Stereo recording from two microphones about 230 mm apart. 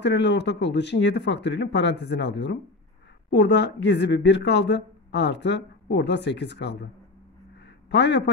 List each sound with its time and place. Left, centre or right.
0.0 s speech: left
7.9 s a man's voice: left